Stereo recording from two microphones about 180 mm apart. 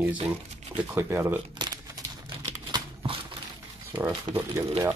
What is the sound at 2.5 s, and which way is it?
Crumpling, 25° right (ahead or behind).